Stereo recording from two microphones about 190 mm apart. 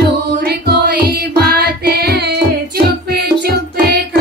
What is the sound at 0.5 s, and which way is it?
Music, 55° right (ahead or behind).